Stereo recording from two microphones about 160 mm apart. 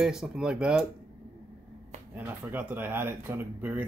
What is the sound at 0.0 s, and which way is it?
Speech, 5° right (ahead or behind).